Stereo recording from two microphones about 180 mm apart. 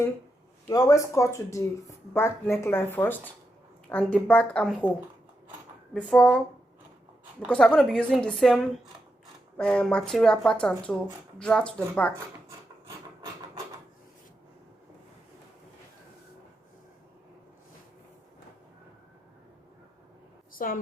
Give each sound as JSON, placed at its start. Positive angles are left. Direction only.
{"t": 0.7, "sound": "speech", "side_deg": 20}
{"t": 5.9, "sound": "speech", "side_deg": 5}
{"t": 7.4, "sound": "speech", "side_deg": 5}
{"t": 20.5, "sound": "a sound", "side_deg": 50}